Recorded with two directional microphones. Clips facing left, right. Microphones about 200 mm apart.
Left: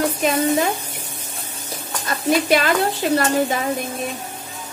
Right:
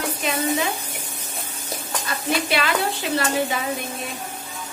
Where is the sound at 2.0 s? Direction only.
45° left (ahead or behind).